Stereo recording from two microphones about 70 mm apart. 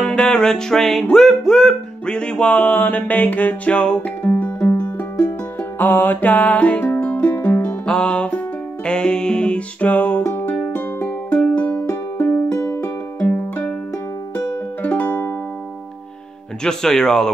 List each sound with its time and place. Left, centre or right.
0.0 s music: centre
4.6 s music: left
7.8 s music: centre; by 12.9 s left
13.2 s music: centre
16.6 s music: centre